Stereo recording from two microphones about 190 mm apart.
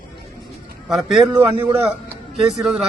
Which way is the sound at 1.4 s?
10° right (ahead or behind).